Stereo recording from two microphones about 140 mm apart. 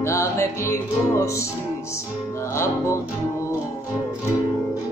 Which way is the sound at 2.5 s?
20° left (ahead or behind).